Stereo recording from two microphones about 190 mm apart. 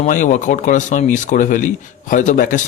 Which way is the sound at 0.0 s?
40° left (ahead or behind).